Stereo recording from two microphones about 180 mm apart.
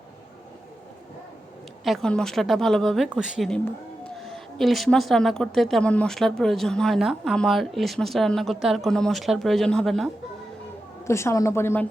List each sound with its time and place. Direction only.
1.8 s a woman's voice: centre (ahead or behind)
11.0 s a woman's voice: 15° left (ahead or behind)